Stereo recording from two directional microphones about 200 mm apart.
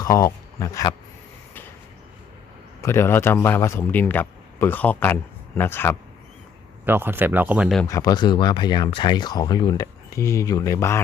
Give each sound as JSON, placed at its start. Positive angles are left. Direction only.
{"t": 0.0, "sound": "speech", "side_deg": 15}
{"t": 2.8, "sound": "a man's voice", "side_deg": 15}
{"t": 6.8, "sound": "speech", "side_deg": -10}
{"t": 7.9, "sound": "speech", "side_deg": 15}